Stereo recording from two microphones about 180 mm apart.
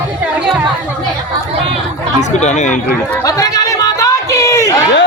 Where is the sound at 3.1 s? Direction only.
20° left (ahead or behind).